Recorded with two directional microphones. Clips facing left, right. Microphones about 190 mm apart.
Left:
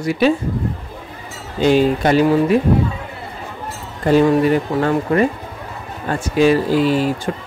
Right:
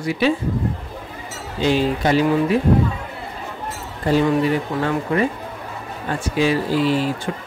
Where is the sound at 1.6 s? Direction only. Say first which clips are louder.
Left 5 dB; 50° left (ahead or behind).